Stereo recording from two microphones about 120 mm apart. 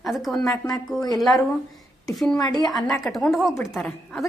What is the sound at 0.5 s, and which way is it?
Speech, 30° left (ahead or behind).